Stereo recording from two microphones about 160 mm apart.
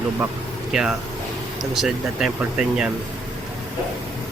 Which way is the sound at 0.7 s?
5° right (ahead or behind).